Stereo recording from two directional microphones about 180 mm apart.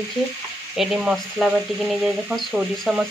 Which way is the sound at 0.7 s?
5° right (ahead or behind).